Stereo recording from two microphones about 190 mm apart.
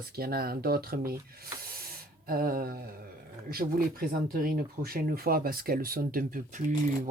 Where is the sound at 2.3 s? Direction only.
50° right (ahead or behind).